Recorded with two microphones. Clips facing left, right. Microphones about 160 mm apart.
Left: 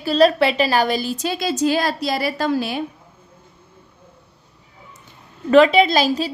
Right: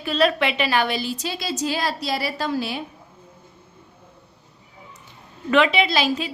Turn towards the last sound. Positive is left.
turn(degrees=40)  # may be behind; listen again after turning